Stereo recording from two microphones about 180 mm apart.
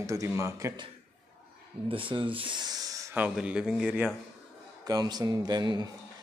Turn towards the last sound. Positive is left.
turn(degrees=-25)  # may be behind; listen again after turning